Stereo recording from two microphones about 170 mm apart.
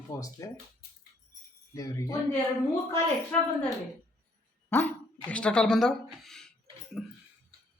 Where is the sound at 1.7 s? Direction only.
20° left (ahead or behind).